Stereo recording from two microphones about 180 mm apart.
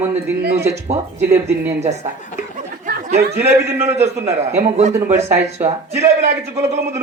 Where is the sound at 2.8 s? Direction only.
60° right (ahead or behind).